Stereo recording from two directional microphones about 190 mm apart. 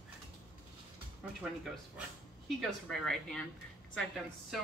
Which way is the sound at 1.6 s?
Centre (ahead or behind).